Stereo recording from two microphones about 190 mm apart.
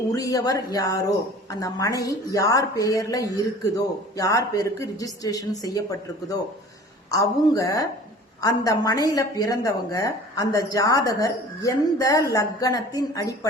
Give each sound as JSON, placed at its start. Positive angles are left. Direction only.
{"t": 0.1, "sound": "a woman's voice", "side_deg": 20}